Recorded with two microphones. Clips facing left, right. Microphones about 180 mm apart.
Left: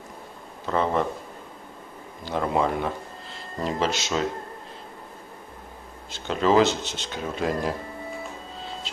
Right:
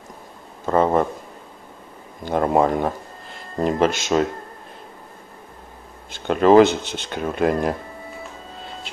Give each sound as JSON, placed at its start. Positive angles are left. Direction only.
{"t": 0.7, "sound": "a man's voice", "side_deg": -45}
{"t": 2.2, "sound": "speech", "side_deg": -50}
{"t": 6.1, "sound": "speech", "side_deg": -55}